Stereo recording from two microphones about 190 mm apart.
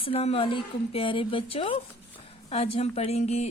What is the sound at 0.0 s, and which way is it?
A woman's voice, 30° left (ahead or behind).